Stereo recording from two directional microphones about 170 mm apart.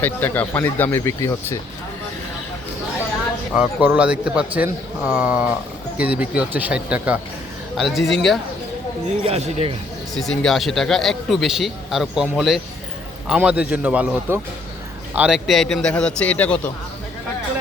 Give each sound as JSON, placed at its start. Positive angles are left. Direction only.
{"t": 0.0, "sound": "speech", "side_deg": 10}
{"t": 3.5, "sound": "a man's voice", "side_deg": -5}
{"t": 9.2, "sound": "speech", "side_deg": -35}
{"t": 10.2, "sound": "a man's voice", "side_deg": 0}